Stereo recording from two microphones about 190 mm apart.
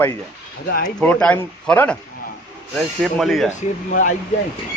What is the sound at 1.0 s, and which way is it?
Speech, 5° left (ahead or behind).